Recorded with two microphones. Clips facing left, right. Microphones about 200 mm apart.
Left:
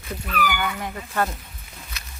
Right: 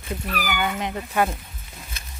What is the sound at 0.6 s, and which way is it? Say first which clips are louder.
Speech: right 3 dB; 20° right (ahead or behind).